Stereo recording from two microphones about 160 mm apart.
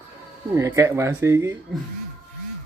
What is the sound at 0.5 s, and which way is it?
Speech, 20° right (ahead or behind).